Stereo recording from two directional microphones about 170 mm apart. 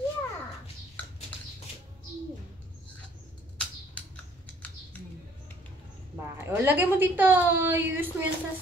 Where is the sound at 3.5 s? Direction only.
10° left (ahead or behind).